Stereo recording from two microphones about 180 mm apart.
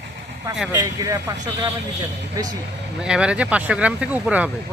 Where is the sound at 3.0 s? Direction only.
5° right (ahead or behind).